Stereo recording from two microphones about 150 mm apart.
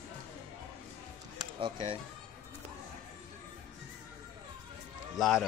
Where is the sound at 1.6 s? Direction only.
35° right (ahead or behind).